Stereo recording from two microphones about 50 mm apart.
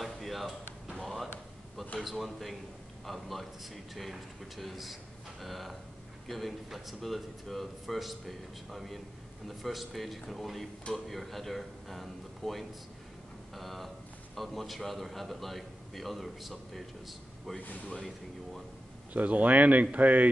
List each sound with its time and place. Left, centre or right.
0.0 s a sound: centre
2.0 s a man's voice: centre
19.1 s speech: right